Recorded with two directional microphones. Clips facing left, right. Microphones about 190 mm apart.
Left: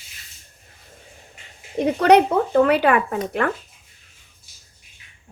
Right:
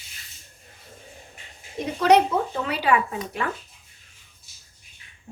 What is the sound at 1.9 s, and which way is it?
Speech, 60° left (ahead or behind).